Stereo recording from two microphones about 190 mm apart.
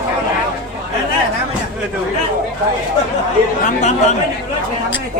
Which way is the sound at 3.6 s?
35° left (ahead or behind).